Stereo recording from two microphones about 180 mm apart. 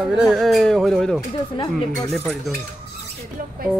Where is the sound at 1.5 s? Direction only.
25° left (ahead or behind).